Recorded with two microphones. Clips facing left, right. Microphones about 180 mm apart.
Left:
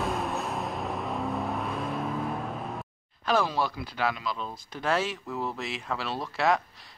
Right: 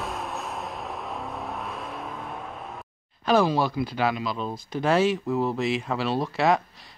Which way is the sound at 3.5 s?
25° right (ahead or behind).